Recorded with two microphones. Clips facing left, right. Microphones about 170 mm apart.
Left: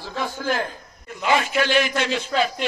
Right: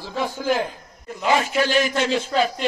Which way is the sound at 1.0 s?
35° right (ahead or behind).